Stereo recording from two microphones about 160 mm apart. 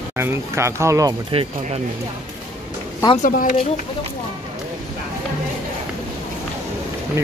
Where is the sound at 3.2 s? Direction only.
60° left (ahead or behind).